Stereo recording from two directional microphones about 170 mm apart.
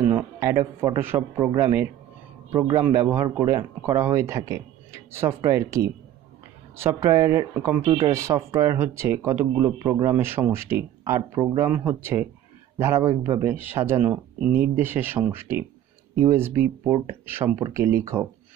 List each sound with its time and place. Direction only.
0.1 s speech: 15° right (ahead or behind)
1.3 s a man's voice: 25° right (ahead or behind)
1.6 s speech: 15° right (ahead or behind)